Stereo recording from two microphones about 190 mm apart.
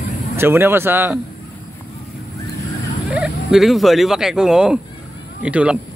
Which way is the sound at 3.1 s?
5° right (ahead or behind).